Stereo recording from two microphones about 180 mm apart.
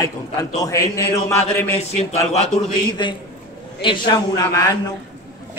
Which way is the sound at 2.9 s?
25° left (ahead or behind).